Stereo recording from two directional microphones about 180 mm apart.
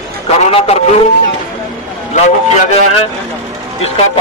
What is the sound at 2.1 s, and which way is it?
Speech, 40° left (ahead or behind).